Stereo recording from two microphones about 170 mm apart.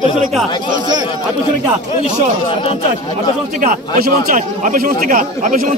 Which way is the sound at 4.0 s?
55° right (ahead or behind).